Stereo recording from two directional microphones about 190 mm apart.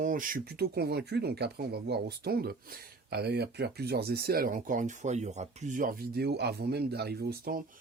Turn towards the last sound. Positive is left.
turn(degrees=-50)  # may be behind; listen again after turning